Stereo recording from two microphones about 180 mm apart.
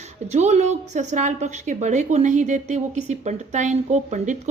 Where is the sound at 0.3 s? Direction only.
40° right (ahead or behind).